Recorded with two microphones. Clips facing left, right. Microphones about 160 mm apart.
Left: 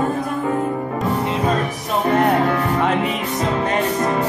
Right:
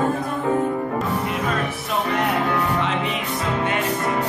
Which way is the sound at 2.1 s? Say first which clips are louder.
Left 7 dB; 45° left (ahead or behind).